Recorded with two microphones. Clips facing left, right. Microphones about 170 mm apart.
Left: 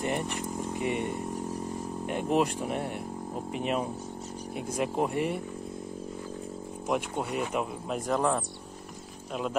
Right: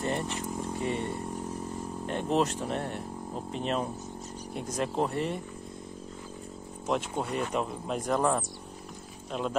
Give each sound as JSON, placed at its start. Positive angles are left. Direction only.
{"t": 0.0, "sound": "vehicle", "side_deg": 15}
{"t": 2.0, "sound": "speech", "side_deg": 10}
{"t": 6.9, "sound": "speech", "side_deg": 10}